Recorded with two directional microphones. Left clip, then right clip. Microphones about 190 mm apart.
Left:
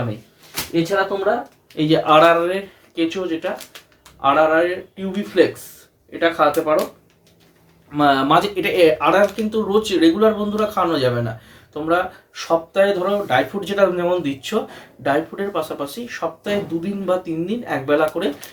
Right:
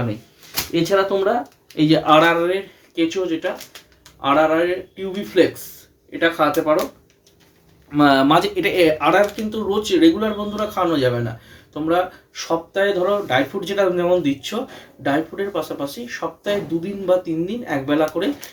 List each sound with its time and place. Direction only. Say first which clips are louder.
0.5 s speech: right 1 dB; 40° right (ahead or behind)
1.7 s speech: right 1 dB; 20° right (ahead or behind)
2.0 s speech: left 3 dB; 5° right (ahead or behind)
7.9 s speech: right 1 dB; 25° right (ahead or behind); by 18.4 s centre (ahead or behind)